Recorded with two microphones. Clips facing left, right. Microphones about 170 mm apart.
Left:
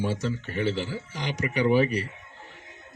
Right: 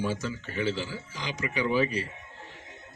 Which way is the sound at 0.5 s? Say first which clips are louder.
Left 1 dB; 50° left (ahead or behind).